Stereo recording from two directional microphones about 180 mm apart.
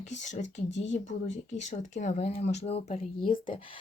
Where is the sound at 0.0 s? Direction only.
40° left (ahead or behind).